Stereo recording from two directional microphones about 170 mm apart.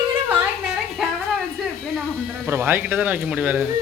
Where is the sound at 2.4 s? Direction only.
10° right (ahead or behind).